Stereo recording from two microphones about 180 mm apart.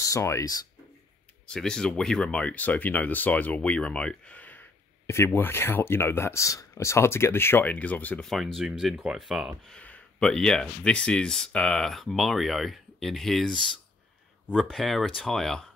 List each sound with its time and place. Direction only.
0.0 s speech: 15° left (ahead or behind)
1.5 s speech: 5° left (ahead or behind)